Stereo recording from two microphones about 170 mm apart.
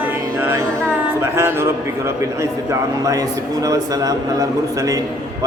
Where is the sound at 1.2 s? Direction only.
15° right (ahead or behind).